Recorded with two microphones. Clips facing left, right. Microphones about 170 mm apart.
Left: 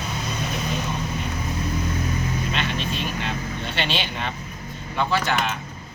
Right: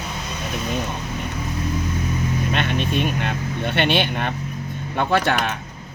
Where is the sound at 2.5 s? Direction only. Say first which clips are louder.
Right 5 dB; 55° right (ahead or behind).